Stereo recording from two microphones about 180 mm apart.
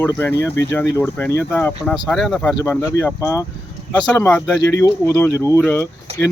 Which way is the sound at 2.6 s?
15° left (ahead or behind).